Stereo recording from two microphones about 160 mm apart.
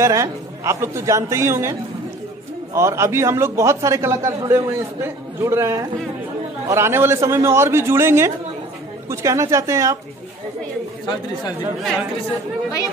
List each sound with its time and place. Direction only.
0.0 s a man's voice: 20° right (ahead or behind)
11.8 s speech: centre (ahead or behind)